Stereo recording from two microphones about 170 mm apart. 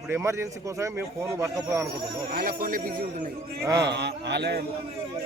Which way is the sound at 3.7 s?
90° right.